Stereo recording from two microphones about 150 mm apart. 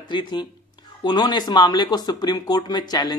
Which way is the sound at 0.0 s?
30° left (ahead or behind).